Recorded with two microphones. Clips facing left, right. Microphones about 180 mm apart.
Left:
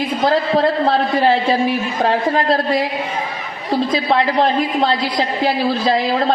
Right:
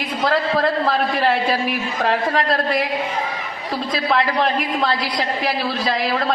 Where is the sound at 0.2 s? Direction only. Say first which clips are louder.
Left 3 dB; 30° left (ahead or behind).